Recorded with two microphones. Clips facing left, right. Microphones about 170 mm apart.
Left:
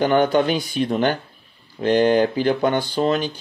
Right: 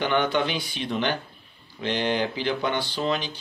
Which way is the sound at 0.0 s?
45° left (ahead or behind).